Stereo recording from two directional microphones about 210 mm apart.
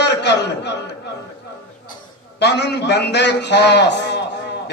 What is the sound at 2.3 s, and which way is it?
A man's voice, 55° left (ahead or behind).